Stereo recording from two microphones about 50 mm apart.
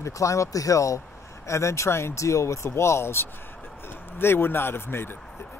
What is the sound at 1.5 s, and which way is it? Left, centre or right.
Speech, left.